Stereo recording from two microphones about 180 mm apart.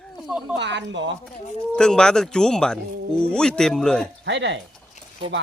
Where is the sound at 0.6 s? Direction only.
75° right (ahead or behind).